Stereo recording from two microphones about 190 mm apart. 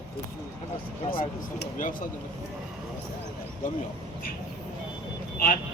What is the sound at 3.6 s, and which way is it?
Speech, 45° left (ahead or behind).